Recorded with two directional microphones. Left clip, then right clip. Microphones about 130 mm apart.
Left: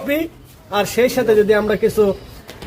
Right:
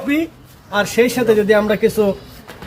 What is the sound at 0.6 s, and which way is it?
Speech, 40° left (ahead or behind).